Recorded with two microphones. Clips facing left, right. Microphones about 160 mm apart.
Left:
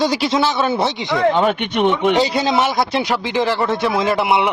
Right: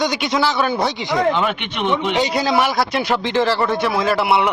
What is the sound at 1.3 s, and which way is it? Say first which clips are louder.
Speech: left 5 dB; 45° left (ahead or behind).